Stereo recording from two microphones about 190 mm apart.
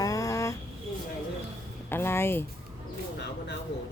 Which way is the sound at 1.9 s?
10° left (ahead or behind).